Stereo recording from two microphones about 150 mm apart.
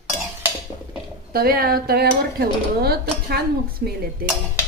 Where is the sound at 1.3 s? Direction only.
90° right.